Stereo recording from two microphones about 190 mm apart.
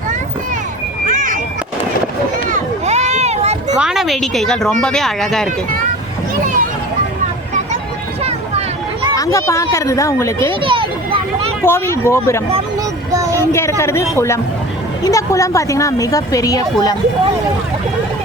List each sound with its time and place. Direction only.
1.0 s a sound: 45° right (ahead or behind)
2.5 s a sound: 40° right (ahead or behind)
3.8 s speech: 5° right (ahead or behind)
8.2 s vehicle: 30° right (ahead or behind)
9.1 s a woman's voice: 15° left (ahead or behind)
10.5 s children playing: 25° right (ahead or behind)
11.6 s a woman's voice: 15° left (ahead or behind)
13.1 s a sound: 15° right (ahead or behind)
13.5 s a woman's voice: 15° left (ahead or behind)